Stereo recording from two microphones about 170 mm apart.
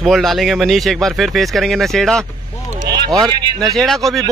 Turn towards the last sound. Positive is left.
turn(degrees=0)  # may be behind; listen again after turning